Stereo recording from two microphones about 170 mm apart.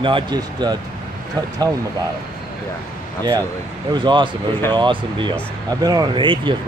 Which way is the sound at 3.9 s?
30° right (ahead or behind).